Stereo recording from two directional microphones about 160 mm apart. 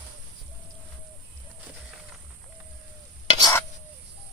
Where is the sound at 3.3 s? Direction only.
25° left (ahead or behind).